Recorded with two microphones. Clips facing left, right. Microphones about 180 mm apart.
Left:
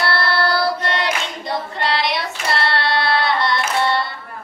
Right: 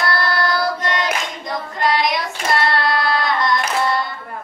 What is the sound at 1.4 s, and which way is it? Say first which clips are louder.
Singing: right 2 dB; 30° left (ahead or behind).